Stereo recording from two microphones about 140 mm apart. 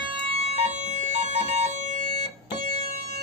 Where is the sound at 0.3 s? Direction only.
50° right (ahead or behind).